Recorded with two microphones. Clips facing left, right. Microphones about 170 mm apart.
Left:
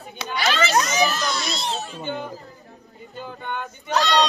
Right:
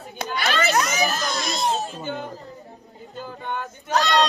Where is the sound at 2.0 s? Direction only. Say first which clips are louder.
Left 1 dB; 5° right (ahead or behind).